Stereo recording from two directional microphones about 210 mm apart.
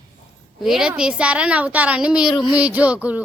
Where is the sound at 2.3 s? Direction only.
20° left (ahead or behind).